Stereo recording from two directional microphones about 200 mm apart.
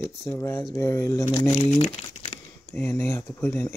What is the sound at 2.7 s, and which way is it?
Speech, 10° left (ahead or behind).